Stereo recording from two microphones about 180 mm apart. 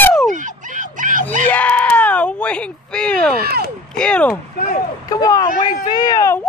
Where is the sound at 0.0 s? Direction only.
5° left (ahead or behind).